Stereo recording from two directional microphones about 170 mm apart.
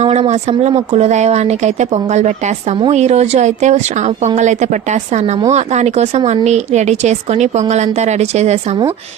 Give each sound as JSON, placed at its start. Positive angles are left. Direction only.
{"t": 0.0, "sound": "speech", "side_deg": -40}